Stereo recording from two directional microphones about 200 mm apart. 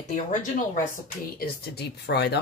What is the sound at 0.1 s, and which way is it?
Speech, 40° left (ahead or behind).